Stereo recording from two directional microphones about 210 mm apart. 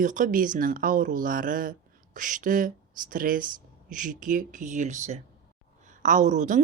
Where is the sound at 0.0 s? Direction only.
40° right (ahead or behind).